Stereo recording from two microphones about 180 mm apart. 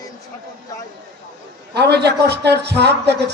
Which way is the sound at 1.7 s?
65° right (ahead or behind).